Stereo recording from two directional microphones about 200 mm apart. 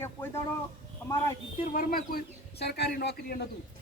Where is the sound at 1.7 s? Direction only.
45° left (ahead or behind).